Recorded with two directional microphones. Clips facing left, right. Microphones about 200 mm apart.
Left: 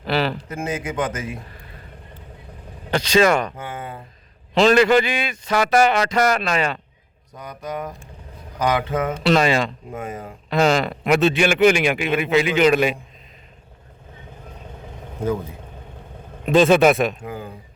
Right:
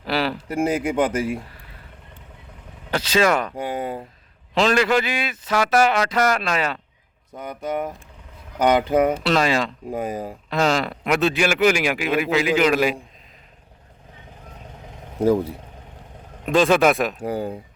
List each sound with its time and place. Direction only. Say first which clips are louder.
0.0 s a sound: left 1 dB; 5° right (ahead or behind)
0.4 s speech: right 5 dB; 35° right (ahead or behind)
2.9 s a man's voice: left 3 dB; 5° right (ahead or behind)
3.5 s speech: right 6 dB; 35° right (ahead or behind)
4.5 s a man's voice: left 4 dB; centre (ahead or behind)
9.0 s a man's voice: left 2 dB; 5° right (ahead or behind)
9.9 s speech: right 4 dB; 35° right (ahead or behind)
10.5 s a man's voice: left 3 dB; centre (ahead or behind)
15.2 s speech: right 6 dB; 35° right (ahead or behind)
16.5 s a man's voice: left 3 dB; centre (ahead or behind)
17.2 s speech: right 7 dB; 35° right (ahead or behind)